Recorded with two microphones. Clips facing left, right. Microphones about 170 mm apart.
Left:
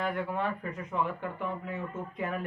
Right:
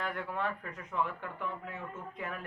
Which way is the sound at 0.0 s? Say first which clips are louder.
Left 4 dB; 10° left (ahead or behind).